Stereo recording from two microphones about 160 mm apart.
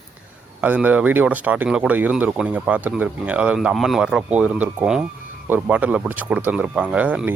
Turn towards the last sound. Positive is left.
turn(degrees=-10)  # may be behind; listen again after turning